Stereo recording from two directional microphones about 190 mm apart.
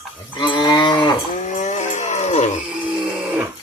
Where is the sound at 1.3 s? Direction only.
40° left (ahead or behind).